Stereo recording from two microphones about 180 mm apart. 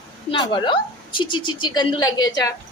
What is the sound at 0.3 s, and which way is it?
A woman's voice, 25° left (ahead or behind).